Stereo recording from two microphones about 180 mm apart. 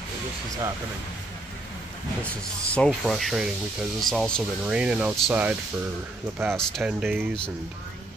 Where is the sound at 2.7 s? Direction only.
5° left (ahead or behind).